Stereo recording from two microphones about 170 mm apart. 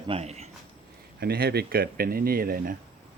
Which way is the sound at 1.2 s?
65° right (ahead or behind).